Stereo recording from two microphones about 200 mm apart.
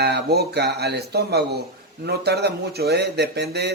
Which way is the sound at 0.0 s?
55° right (ahead or behind).